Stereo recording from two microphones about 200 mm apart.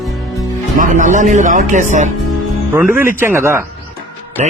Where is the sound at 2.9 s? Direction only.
10° right (ahead or behind).